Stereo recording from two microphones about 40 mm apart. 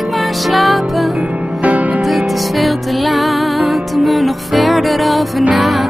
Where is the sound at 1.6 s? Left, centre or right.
Right.